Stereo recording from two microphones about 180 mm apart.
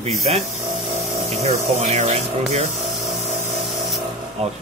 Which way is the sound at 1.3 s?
35° right (ahead or behind).